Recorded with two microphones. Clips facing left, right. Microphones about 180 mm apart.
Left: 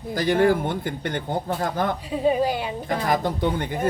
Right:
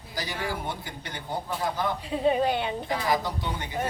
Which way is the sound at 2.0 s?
Centre (ahead or behind).